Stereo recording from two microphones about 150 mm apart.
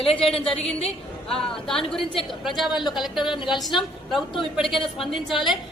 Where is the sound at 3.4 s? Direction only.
Centre (ahead or behind).